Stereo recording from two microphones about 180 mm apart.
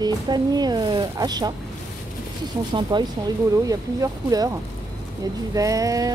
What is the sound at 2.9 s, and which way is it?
Speech, 25° right (ahead or behind).